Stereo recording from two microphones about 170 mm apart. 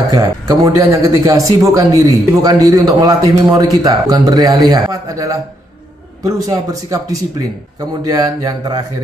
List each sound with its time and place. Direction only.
0.1 s speech: 20° right (ahead or behind)